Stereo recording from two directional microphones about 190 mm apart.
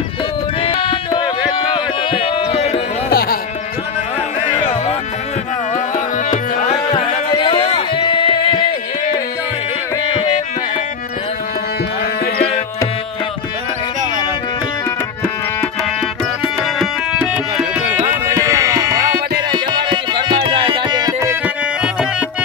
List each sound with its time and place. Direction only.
0.6 s a sound: 30° left (ahead or behind)
3.1 s music: 50° left (ahead or behind)
5.9 s music: 40° left (ahead or behind)
16.6 s music: centre (ahead or behind); by 21.4 s 15° right (ahead or behind)